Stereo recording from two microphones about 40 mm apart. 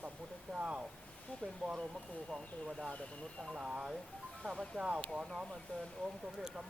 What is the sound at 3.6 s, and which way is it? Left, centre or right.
Speech, right.